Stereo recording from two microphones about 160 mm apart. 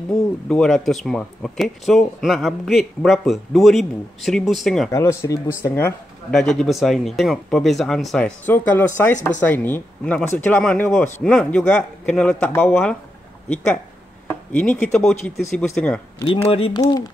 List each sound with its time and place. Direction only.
0.1 s speech: 5° left (ahead or behind)
4.9 s speech: 15° left (ahead or behind)
6.3 s speech: 5° left (ahead or behind)
14.2 s speech: 10° left (ahead or behind)
16.4 s speech: 35° left (ahead or behind)